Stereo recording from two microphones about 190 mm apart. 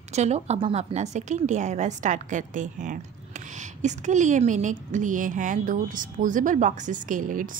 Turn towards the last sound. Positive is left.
turn(degrees=-45)  # may be behind; listen again after turning